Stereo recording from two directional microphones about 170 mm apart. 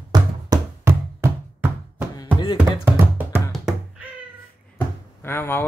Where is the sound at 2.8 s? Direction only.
10° right (ahead or behind).